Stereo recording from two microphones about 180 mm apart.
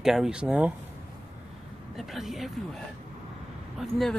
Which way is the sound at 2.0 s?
Centre (ahead or behind).